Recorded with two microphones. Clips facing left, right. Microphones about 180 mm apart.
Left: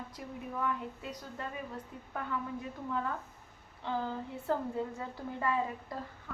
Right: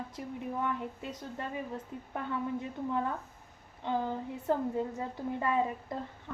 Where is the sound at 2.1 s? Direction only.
25° right (ahead or behind).